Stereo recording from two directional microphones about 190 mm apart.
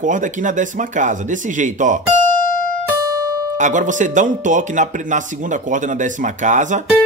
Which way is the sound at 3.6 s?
40° right (ahead or behind).